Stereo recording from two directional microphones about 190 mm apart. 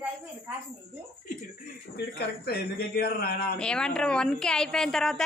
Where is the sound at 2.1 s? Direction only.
55° left (ahead or behind).